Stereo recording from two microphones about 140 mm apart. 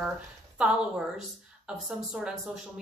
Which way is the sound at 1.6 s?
Centre (ahead or behind).